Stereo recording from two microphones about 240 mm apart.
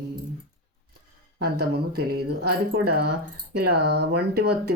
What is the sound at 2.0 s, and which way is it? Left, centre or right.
Speech, right.